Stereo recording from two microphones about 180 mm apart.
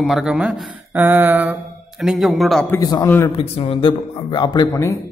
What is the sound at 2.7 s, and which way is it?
Speech, 20° left (ahead or behind).